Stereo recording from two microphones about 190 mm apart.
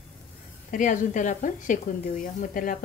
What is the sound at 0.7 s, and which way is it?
A woman's voice, 45° left (ahead or behind).